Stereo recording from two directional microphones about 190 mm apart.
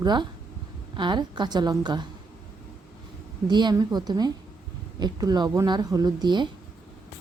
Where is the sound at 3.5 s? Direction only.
25° right (ahead or behind).